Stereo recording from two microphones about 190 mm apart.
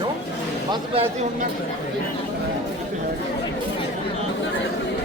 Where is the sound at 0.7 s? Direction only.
30° right (ahead or behind).